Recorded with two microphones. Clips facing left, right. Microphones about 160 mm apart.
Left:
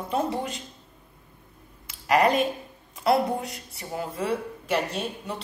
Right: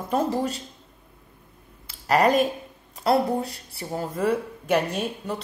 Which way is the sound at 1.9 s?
40° right (ahead or behind).